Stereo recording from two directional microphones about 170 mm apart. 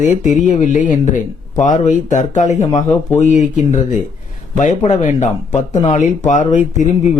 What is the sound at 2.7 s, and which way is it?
Speech, 20° left (ahead or behind).